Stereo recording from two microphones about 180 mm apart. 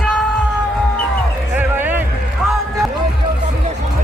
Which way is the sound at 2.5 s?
Centre (ahead or behind).